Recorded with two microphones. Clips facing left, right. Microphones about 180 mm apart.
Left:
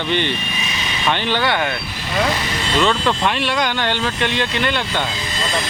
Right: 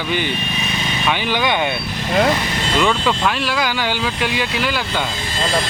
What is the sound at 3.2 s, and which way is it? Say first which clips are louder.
Speech: even; centre (ahead or behind).